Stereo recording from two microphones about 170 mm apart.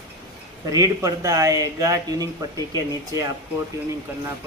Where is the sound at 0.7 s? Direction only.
20° right (ahead or behind).